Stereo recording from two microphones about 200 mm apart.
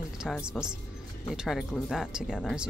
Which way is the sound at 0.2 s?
5° right (ahead or behind).